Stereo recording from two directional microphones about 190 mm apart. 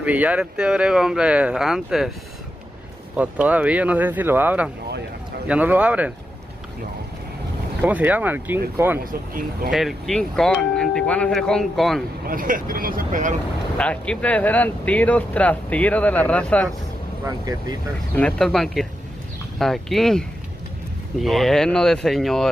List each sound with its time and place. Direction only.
0.0 s speech: 10° right (ahead or behind)
3.2 s speech: 10° right (ahead or behind)
7.8 s speech: 10° right (ahead or behind)
9.0 s speech: 50° right (ahead or behind)
9.7 s speech: centre (ahead or behind)
12.3 s speech: 45° right (ahead or behind)
13.7 s speech: 5° left (ahead or behind)
17.2 s speech: 20° right (ahead or behind)
18.1 s speech: 5° left (ahead or behind)